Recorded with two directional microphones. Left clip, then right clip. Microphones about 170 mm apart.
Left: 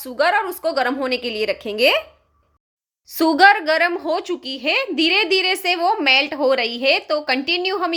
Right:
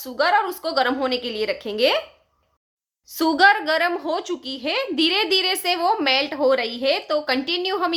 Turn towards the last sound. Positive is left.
turn(degrees=10)  # may be behind; listen again after turning